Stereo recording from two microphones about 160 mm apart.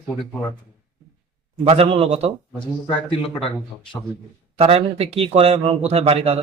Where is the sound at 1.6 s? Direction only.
35° right (ahead or behind).